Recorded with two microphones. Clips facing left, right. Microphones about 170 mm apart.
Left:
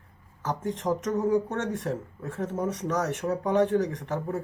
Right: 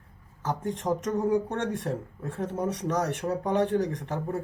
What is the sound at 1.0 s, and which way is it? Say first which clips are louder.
Speech: left 1 dB; 30° right (ahead or behind).